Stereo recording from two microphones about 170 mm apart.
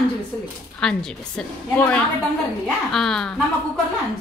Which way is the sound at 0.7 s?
5° left (ahead or behind).